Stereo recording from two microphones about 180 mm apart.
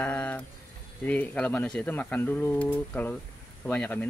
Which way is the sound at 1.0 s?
10° left (ahead or behind).